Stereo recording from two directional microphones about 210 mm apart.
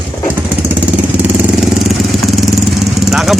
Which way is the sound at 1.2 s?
5° right (ahead or behind).